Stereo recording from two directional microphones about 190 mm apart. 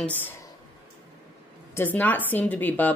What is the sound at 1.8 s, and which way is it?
Speech, 10° left (ahead or behind).